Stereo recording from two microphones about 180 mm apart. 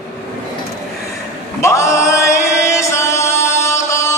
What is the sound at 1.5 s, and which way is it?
Chant, 15° left (ahead or behind).